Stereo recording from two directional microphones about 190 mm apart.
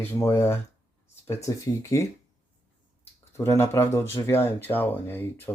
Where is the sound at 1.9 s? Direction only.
20° left (ahead or behind).